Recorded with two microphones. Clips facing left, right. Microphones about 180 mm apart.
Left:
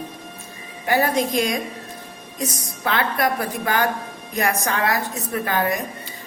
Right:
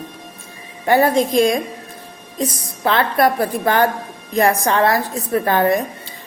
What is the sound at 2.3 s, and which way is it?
A woman's voice, 30° right (ahead or behind).